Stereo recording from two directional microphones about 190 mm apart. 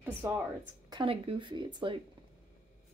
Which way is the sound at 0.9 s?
30° right (ahead or behind).